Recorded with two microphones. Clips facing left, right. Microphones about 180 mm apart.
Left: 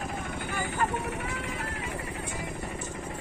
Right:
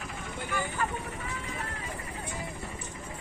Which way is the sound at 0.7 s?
75° left (ahead or behind).